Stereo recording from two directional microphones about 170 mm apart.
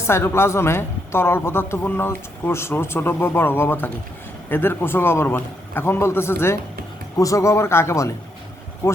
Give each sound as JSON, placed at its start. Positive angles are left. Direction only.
{"t": 0.1, "sound": "speech", "side_deg": 15}